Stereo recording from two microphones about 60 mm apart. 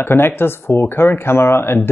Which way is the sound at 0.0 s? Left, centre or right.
Left.